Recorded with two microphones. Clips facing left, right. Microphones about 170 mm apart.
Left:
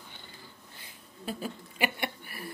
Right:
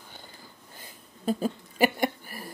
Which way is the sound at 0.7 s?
40° right (ahead or behind).